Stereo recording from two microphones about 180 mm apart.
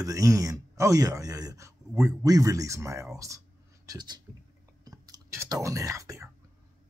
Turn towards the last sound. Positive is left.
turn(degrees=-15)  # may be behind; listen again after turning